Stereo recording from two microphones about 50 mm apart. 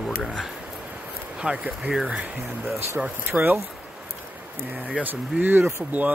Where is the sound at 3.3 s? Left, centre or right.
Right.